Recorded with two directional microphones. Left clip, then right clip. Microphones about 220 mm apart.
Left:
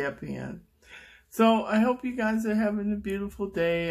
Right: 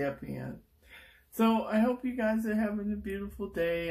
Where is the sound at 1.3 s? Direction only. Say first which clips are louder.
Left 6 dB; 45° left (ahead or behind).